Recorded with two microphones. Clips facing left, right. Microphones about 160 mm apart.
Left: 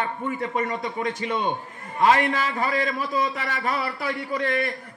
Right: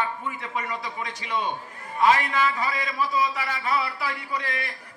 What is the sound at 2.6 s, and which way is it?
A man's voice, 50° left (ahead or behind).